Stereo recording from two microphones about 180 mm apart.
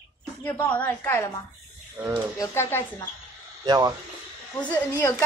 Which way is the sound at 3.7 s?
20° right (ahead or behind).